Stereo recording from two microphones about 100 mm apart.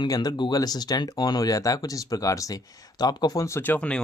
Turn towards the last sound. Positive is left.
turn(degrees=15)  # may be behind; listen again after turning